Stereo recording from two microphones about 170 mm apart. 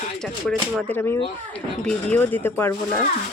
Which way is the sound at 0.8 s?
10° left (ahead or behind).